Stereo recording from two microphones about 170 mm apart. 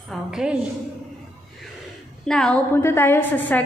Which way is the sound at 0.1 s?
5° right (ahead or behind).